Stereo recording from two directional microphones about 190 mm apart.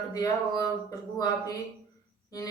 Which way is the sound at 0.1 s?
20° left (ahead or behind).